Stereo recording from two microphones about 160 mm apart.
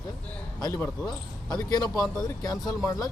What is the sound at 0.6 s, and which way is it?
Speech, 20° left (ahead or behind).